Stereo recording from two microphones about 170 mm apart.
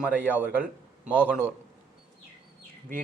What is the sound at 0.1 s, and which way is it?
Speech, 10° right (ahead or behind).